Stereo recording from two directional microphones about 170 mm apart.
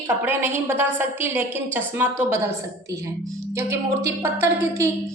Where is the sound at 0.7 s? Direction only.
10° right (ahead or behind).